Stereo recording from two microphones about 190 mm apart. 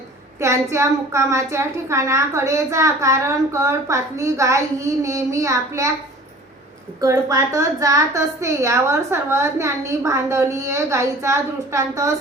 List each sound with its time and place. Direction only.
0.3 s a woman's voice: 15° right (ahead or behind)
7.0 s a woman's voice: 15° right (ahead or behind)